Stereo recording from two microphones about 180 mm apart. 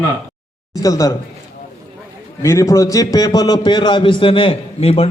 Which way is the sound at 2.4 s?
15° left (ahead or behind).